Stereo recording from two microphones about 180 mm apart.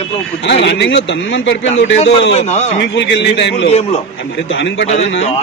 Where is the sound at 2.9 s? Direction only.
75° left (ahead or behind).